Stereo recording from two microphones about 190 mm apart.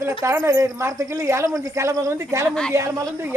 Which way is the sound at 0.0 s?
15° right (ahead or behind).